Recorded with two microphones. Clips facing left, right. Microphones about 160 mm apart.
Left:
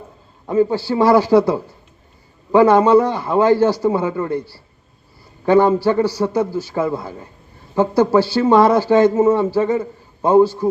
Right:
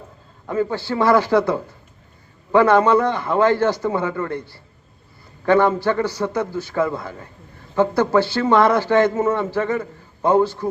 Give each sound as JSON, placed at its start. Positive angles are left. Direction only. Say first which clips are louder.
{"t": 0.4, "sound": "a man's voice", "louder": "left 6 dB", "side_deg": 15}